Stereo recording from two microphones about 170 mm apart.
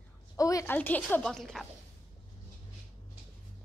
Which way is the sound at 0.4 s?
20° left (ahead or behind).